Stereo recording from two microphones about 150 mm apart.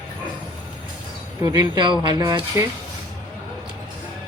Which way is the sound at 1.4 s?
25° right (ahead or behind).